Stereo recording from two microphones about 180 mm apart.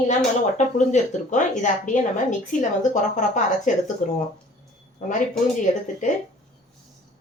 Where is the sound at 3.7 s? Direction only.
45° left (ahead or behind).